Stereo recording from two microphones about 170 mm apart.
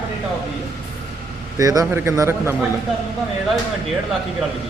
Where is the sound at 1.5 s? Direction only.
20° right (ahead or behind).